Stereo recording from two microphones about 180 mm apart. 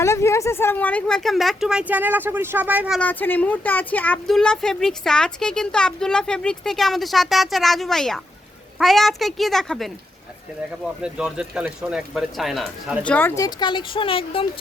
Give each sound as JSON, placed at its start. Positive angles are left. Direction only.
{"t": 0.0, "sound": "speech", "side_deg": 15}
{"t": 3.0, "sound": "speech", "side_deg": 10}
{"t": 11.0, "sound": "speech", "side_deg": -5}
{"t": 13.1, "sound": "speech", "side_deg": 10}